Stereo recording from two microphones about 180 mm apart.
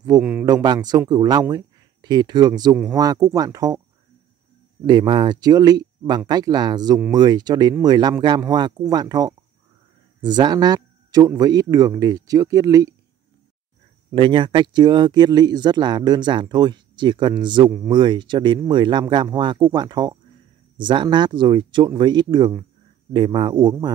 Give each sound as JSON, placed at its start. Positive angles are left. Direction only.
{"t": 0.2, "sound": "speech", "side_deg": -10}
{"t": 0.5, "sound": "speech", "side_deg": -20}
{"t": 4.8, "sound": "speech", "side_deg": -25}
{"t": 14.1, "sound": "speech", "side_deg": -30}